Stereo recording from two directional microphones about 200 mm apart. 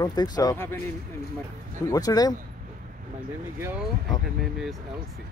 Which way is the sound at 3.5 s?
10° right (ahead or behind).